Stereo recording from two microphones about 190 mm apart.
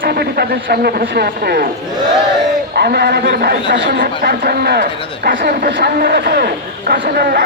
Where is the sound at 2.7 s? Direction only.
60° right (ahead or behind).